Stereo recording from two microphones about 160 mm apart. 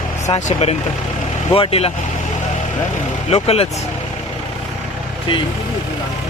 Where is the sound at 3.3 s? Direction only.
40° left (ahead or behind).